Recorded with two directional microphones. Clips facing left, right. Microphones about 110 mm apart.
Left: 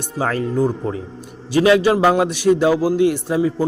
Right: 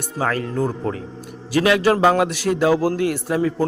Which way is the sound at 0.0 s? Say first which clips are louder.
Left 1 dB; 30° left (ahead or behind).